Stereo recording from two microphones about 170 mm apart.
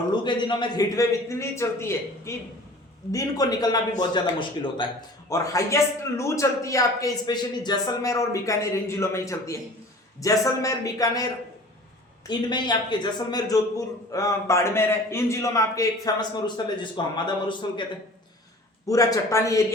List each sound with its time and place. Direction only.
0.2 s a man's voice: 25° left (ahead or behind)
12.3 s a man's voice: 25° left (ahead or behind)
18.9 s a man's voice: 20° left (ahead or behind)